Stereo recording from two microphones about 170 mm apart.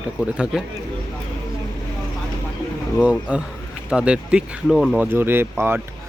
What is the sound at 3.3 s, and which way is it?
Speech, 5° right (ahead or behind).